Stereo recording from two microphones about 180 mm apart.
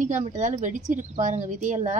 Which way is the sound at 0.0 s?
45° right (ahead or behind).